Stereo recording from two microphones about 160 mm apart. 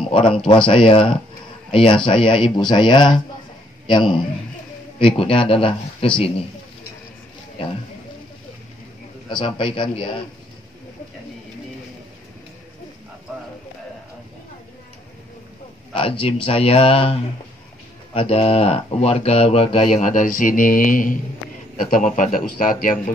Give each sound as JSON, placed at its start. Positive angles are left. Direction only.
{"t": 0.1, "sound": "speech", "side_deg": 35}
{"t": 9.3, "sound": "speech", "side_deg": 30}
{"t": 15.9, "sound": "speech", "side_deg": 35}
{"t": 19.9, "sound": "speech", "side_deg": 50}